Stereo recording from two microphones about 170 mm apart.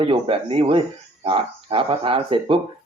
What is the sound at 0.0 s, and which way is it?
Speech, 30° right (ahead or behind).